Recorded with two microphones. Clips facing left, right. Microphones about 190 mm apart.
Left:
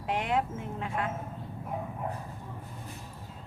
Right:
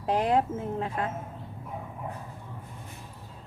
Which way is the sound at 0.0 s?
35° right (ahead or behind).